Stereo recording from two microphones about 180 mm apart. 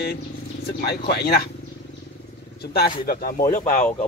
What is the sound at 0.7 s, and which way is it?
Speech, 60° left (ahead or behind).